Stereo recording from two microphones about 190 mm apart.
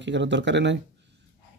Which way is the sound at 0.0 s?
70° right (ahead or behind).